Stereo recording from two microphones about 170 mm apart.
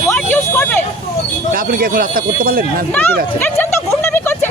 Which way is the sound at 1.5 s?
55° right (ahead or behind).